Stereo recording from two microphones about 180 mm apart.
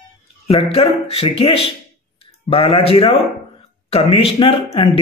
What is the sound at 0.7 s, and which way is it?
Speech, 35° left (ahead or behind).